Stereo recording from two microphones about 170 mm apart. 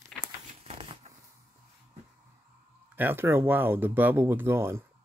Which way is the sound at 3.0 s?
10° right (ahead or behind).